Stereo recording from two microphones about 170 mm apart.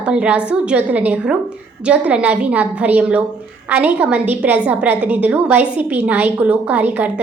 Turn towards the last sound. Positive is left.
turn(degrees=-10)  # may be behind; listen again after turning